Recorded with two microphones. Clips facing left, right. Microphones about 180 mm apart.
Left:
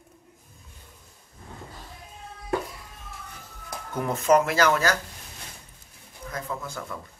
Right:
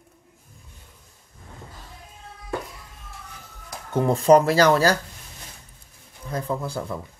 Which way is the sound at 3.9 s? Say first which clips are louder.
Right 5 dB; 30° right (ahead or behind).